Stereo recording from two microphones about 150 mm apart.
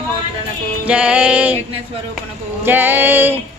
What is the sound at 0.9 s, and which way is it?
Speech, 10° right (ahead or behind).